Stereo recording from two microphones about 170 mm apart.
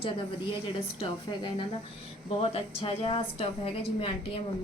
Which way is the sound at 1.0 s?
30° left (ahead or behind).